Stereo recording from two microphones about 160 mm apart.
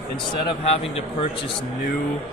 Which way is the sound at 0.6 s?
40° left (ahead or behind).